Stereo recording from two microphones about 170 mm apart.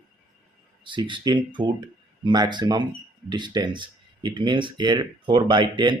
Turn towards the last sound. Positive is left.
turn(degrees=-25)  # may be behind; listen again after turning